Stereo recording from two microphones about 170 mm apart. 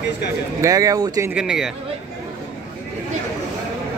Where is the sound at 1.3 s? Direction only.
5° right (ahead or behind).